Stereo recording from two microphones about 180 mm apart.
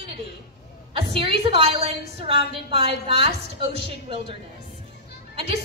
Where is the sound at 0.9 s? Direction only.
30° right (ahead or behind).